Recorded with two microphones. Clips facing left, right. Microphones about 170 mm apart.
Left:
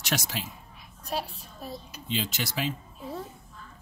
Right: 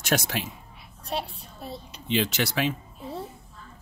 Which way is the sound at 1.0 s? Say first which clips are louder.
Right 1 dB; 30° right (ahead or behind).